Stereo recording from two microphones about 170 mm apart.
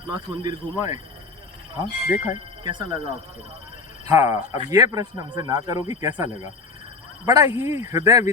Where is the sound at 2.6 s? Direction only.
25° right (ahead or behind).